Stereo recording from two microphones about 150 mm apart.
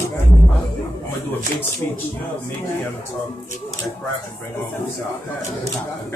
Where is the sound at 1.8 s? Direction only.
25° left (ahead or behind).